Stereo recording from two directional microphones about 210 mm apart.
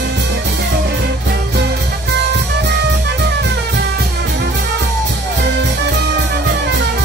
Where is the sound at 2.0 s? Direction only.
55° right (ahead or behind).